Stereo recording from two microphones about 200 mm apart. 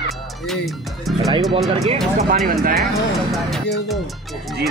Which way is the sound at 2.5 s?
45° right (ahead or behind).